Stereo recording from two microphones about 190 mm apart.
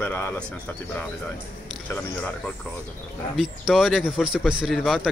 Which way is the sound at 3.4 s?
Centre (ahead or behind).